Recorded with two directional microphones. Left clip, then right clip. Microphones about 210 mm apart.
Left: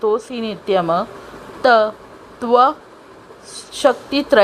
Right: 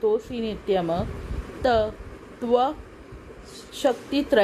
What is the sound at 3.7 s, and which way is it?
Speech, 10° left (ahead or behind).